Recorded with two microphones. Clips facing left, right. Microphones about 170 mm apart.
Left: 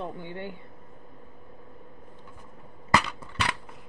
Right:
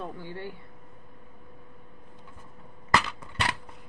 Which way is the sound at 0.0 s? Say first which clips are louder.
Left 2 dB; 20° left (ahead or behind).